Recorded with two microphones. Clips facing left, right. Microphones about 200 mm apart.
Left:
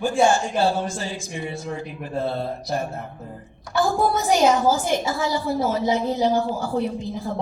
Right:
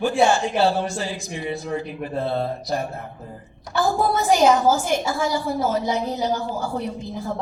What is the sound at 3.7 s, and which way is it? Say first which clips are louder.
A woman's voice: even; 55° right (ahead or behind).